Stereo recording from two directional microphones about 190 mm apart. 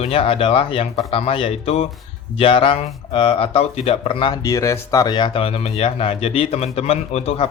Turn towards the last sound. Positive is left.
turn(degrees=30)  # may be behind; listen again after turning